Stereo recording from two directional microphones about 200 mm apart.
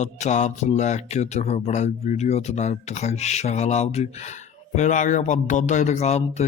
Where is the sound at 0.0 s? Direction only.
35° left (ahead or behind).